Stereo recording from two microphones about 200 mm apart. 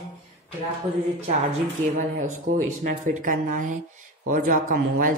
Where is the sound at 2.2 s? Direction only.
40° right (ahead or behind).